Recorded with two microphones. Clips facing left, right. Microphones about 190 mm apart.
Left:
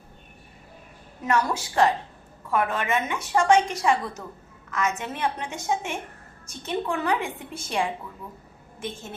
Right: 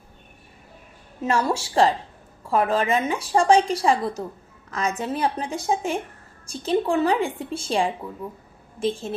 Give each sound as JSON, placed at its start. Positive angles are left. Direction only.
{"t": 1.2, "sound": "a woman's voice", "side_deg": -25}